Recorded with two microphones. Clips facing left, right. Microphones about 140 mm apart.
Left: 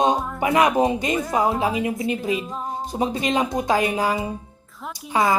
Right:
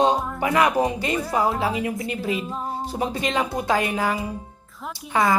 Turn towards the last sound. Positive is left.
turn(degrees=25)  # may be behind; listen again after turning